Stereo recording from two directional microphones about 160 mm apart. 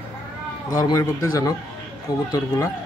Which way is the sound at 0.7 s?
20° left (ahead or behind).